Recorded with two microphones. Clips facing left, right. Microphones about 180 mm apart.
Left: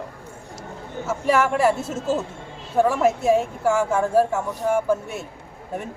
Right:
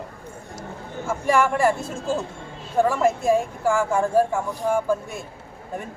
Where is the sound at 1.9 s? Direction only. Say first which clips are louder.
Left 2 dB; 25° left (ahead or behind).